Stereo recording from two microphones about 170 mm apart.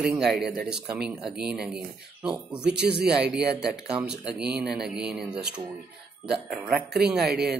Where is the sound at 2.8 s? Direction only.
75° right (ahead or behind).